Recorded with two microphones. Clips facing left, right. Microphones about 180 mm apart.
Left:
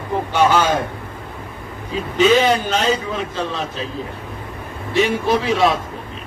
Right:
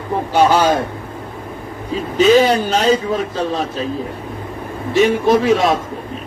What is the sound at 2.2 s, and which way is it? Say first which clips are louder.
A man's voice: right 3 dB; 35° right (ahead or behind).